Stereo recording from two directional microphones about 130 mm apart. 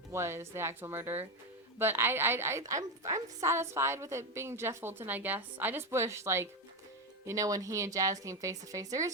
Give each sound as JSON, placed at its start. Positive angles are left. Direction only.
{"t": 0.1, "sound": "a woman's voice", "side_deg": -20}